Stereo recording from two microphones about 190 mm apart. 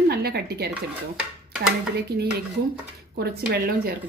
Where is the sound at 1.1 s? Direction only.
5° right (ahead or behind).